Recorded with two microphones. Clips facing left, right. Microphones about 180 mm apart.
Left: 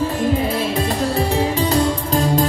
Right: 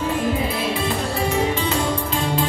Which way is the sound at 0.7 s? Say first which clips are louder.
Left 4 dB; 40° left (ahead or behind).